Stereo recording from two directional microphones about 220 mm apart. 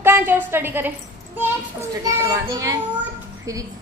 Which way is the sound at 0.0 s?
10° right (ahead or behind).